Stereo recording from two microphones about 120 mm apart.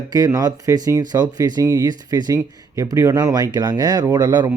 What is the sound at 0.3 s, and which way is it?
Speech, 30° right (ahead or behind).